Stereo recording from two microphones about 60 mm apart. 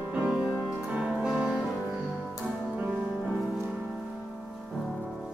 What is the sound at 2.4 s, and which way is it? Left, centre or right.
Music, right.